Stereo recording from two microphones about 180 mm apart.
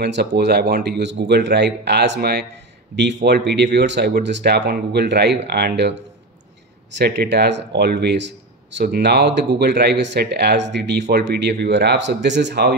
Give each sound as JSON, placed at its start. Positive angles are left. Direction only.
{"t": 0.0, "sound": "speech", "side_deg": -70}
{"t": 3.0, "sound": "speech", "side_deg": -75}